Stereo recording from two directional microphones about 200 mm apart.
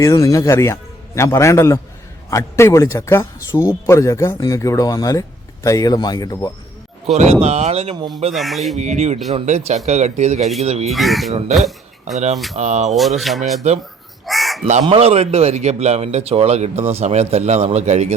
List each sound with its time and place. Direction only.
0.0 s a man's voice: 15° left (ahead or behind)
7.1 s speech: 30° right (ahead or behind)
8.3 s speech: centre (ahead or behind)
8.8 s speech: 35° right (ahead or behind)
10.9 s speech: centre (ahead or behind)
11.3 s speech: 35° right (ahead or behind)
13.0 s speech: centre (ahead or behind)
14.3 s chicken: centre (ahead or behind)
14.6 s speech: 30° right (ahead or behind)